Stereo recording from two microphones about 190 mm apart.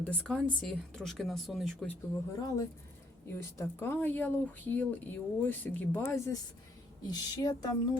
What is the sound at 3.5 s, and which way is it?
Speech, 10° left (ahead or behind).